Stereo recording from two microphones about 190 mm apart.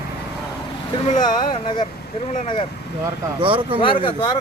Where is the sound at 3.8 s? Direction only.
25° left (ahead or behind).